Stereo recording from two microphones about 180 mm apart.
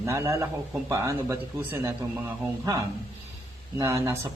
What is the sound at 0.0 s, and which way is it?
A man's voice, 15° right (ahead or behind).